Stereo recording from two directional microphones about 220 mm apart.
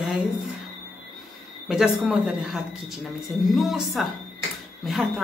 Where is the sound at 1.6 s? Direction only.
5° right (ahead or behind).